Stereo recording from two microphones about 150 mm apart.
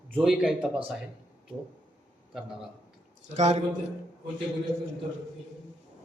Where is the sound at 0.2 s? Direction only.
5° right (ahead or behind).